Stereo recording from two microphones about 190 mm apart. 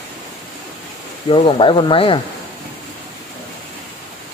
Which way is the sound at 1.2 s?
25° left (ahead or behind).